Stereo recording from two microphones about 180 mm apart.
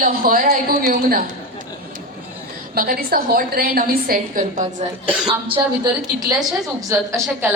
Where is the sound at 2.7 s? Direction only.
50° right (ahead or behind).